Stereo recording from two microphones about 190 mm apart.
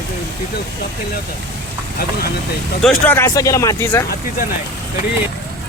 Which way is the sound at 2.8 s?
5° left (ahead or behind).